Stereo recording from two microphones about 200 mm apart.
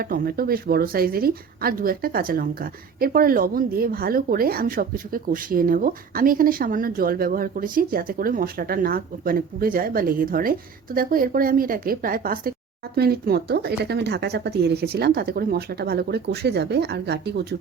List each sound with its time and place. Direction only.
0.0 s speech: 45° right (ahead or behind)